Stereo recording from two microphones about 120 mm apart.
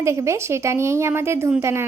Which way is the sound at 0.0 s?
25° right (ahead or behind).